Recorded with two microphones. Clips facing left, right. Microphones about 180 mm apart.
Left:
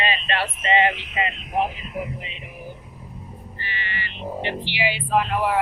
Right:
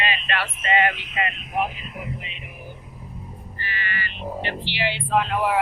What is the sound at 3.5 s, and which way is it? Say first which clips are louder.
Speech: right 2 dB; 20° left (ahead or behind).